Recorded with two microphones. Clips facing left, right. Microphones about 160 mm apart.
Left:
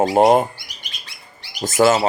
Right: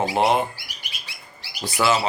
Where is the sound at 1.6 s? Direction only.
45° left (ahead or behind).